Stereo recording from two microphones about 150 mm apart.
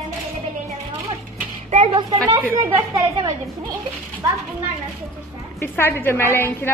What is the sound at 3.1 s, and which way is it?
Speech, 25° right (ahead or behind).